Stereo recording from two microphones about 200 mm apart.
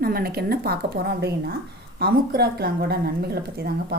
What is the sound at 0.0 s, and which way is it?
A woman's voice, 50° right (ahead or behind).